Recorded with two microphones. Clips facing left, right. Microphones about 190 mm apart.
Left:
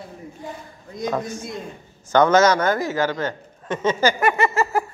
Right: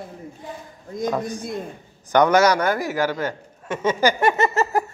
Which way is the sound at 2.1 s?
15° right (ahead or behind).